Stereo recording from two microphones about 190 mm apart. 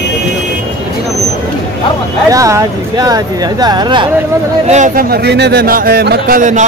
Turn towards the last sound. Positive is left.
turn(degrees=-40)  # may be behind; listen again after turning